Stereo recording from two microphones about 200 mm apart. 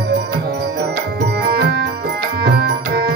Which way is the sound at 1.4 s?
50° right (ahead or behind).